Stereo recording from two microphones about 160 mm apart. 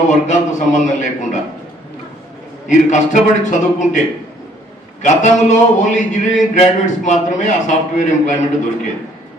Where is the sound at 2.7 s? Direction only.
50° left (ahead or behind).